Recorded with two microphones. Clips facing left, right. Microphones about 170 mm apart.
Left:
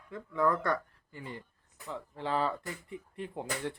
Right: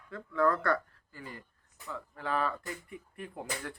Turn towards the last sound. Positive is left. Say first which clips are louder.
# left 3 dB
turn(degrees=25)  # may be behind; listen again after turning